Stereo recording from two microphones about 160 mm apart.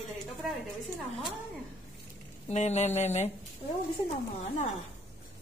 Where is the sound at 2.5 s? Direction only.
45° left (ahead or behind).